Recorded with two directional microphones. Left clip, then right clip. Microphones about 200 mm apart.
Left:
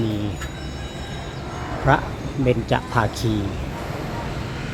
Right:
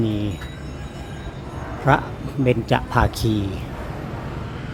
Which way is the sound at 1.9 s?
20° right (ahead or behind).